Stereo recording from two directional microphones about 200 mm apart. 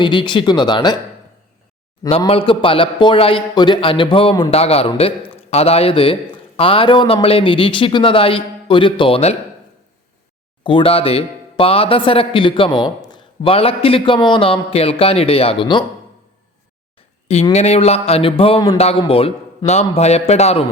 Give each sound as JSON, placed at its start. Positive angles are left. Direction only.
{"t": 0.0, "sound": "speech", "side_deg": 25}
{"t": 2.0, "sound": "speech", "side_deg": 30}
{"t": 10.6, "sound": "speech", "side_deg": 25}
{"t": 17.5, "sound": "a man's voice", "side_deg": 30}